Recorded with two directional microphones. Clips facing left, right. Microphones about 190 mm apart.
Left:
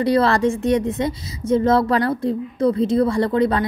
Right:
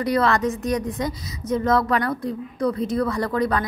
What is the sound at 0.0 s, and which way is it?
A woman's voice, 30° left (ahead or behind).